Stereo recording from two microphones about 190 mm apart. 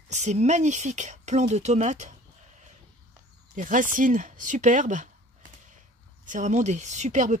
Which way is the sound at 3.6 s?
45° right (ahead or behind).